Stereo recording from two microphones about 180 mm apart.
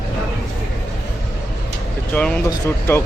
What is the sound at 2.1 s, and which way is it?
Speech, 5° left (ahead or behind).